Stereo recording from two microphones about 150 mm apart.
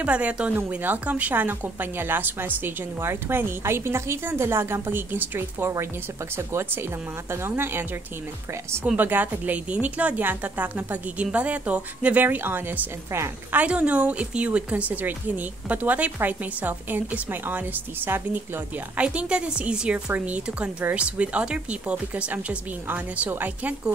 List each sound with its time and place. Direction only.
0.0 s a woman's voice: 10° right (ahead or behind)
8.8 s a woman's voice: 10° right (ahead or behind)